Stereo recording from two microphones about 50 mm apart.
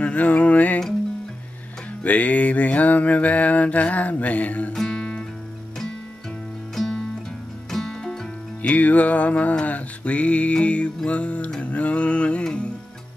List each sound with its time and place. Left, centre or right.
0.0 s music: left
2.0 s music: left
4.8 s guitar: centre
6.7 s music: centre
8.6 s music: left